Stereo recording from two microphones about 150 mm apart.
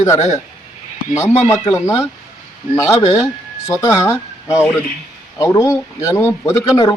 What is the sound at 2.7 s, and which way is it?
A man's voice, 20° left (ahead or behind).